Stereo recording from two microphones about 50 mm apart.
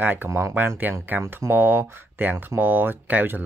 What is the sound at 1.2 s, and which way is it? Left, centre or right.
Speech, right.